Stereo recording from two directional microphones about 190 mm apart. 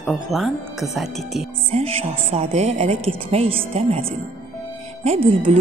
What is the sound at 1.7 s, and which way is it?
A woman's voice, 30° right (ahead or behind).